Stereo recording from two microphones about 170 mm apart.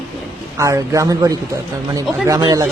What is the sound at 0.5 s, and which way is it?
Speech, 20° right (ahead or behind).